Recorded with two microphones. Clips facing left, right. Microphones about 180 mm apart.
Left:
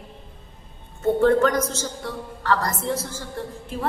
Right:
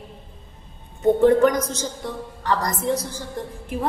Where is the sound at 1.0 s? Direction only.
15° right (ahead or behind).